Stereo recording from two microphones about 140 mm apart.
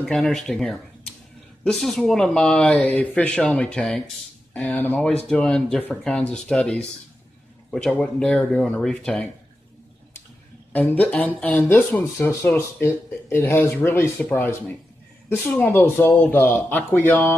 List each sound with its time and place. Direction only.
0.0 s a man's voice: centre (ahead or behind)
11.0 s speech: 10° left (ahead or behind)